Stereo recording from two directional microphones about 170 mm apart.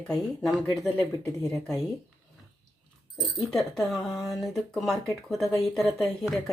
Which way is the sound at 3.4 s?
5° left (ahead or behind).